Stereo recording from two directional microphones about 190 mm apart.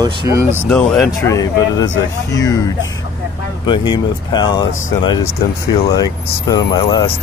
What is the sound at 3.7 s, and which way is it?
Speech, 25° left (ahead or behind).